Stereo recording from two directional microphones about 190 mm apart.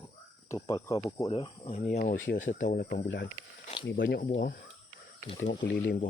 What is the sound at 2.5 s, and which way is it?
Speech, 45° left (ahead or behind).